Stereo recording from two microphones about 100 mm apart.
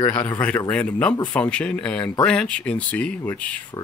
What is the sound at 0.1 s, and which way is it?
Speech, 15° left (ahead or behind).